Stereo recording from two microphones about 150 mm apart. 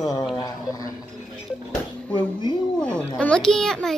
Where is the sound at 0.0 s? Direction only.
25° left (ahead or behind).